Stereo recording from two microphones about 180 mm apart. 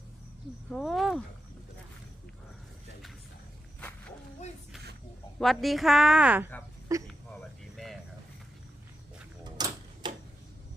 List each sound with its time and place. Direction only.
0.7 s a woman's voice: centre (ahead or behind)
5.4 s a woman's voice: centre (ahead or behind); by 7.1 s 20° right (ahead or behind)
7.4 s cricket: centre (ahead or behind)
9.4 s a sound: 25° right (ahead or behind)